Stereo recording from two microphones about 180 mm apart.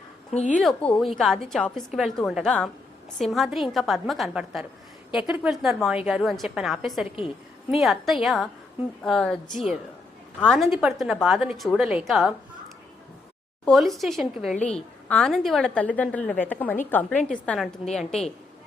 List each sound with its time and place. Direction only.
0.3 s a woman's voice: 45° left (ahead or behind)
0.6 s a woman's voice: 5° left (ahead or behind)
10.4 s a woman's voice: centre (ahead or behind)
13.7 s a woman's voice: centre (ahead or behind)